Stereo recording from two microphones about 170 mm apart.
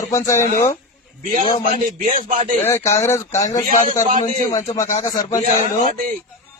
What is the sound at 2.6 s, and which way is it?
Speech, 10° left (ahead or behind).